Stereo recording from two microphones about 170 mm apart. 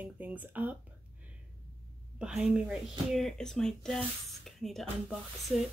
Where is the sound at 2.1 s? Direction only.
5° right (ahead or behind).